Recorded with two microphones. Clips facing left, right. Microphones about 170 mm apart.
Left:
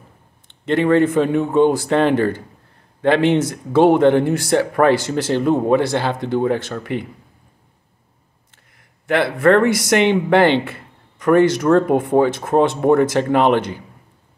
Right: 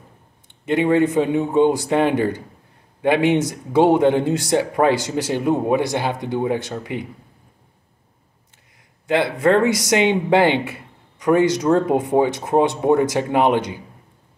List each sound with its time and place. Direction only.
0.7 s speech: 15° right (ahead or behind)
9.0 s speech: 20° right (ahead or behind)